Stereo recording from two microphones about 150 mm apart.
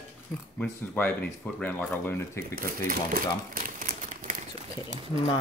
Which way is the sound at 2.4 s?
70° right (ahead or behind).